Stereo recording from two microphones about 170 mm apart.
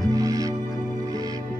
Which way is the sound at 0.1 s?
20° right (ahead or behind).